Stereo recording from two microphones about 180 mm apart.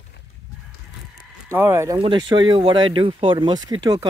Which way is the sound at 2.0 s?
25° right (ahead or behind).